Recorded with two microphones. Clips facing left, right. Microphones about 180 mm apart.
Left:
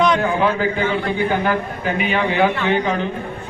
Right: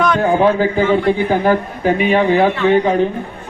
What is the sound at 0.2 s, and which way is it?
A man's voice, 40° right (ahead or behind).